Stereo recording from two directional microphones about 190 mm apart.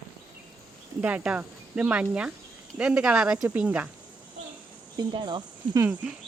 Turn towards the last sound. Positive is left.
turn(degrees=-20)  # may be behind; listen again after turning